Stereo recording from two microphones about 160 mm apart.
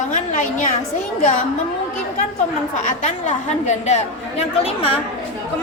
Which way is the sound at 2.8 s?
50° left (ahead or behind).